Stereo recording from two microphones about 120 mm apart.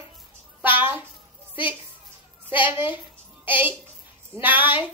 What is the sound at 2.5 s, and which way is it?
A child's voice, 15° right (ahead or behind).